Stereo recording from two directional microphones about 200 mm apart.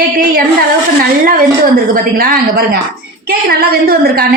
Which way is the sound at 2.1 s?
50° right (ahead or behind).